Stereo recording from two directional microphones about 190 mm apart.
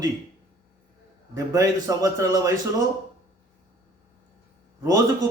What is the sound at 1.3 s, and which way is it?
A man's voice, 15° right (ahead or behind).